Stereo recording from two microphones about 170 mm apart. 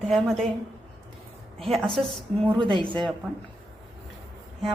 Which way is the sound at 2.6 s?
30° right (ahead or behind).